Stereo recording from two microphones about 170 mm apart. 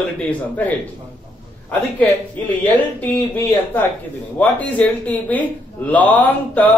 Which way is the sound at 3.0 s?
10° left (ahead or behind).